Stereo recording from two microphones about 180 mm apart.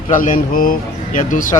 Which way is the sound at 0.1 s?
45° left (ahead or behind).